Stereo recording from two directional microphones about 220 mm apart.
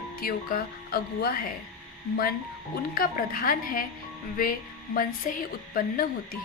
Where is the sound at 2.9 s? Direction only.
40° left (ahead or behind).